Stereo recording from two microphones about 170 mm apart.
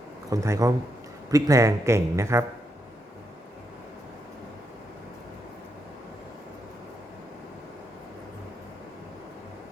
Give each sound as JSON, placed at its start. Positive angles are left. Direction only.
{"t": 0.3, "sound": "speech", "side_deg": -20}